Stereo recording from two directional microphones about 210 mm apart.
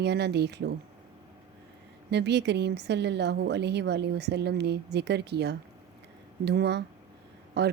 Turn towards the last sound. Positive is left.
turn(degrees=-50)  # may be behind; listen again after turning